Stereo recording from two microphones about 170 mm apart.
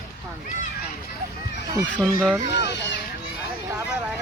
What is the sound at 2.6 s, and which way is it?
Speech, 90° left.